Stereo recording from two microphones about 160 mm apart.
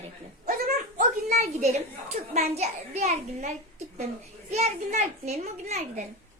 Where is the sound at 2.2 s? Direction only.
45° right (ahead or behind).